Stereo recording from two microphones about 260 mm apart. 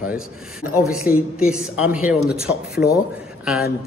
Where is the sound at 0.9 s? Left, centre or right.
Centre.